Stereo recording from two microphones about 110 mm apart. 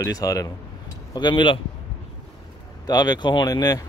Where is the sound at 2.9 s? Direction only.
40° left (ahead or behind).